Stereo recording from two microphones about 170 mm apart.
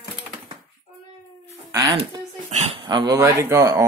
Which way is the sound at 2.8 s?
25° right (ahead or behind).